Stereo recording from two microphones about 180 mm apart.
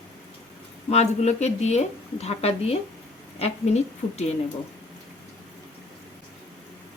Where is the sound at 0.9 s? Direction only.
35° left (ahead or behind).